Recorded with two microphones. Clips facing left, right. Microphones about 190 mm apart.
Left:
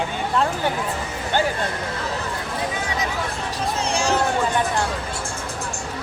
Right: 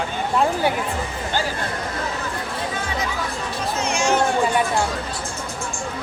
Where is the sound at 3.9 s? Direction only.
35° left (ahead or behind).